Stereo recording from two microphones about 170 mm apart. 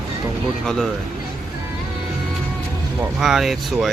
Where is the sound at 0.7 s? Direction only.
Centre (ahead or behind).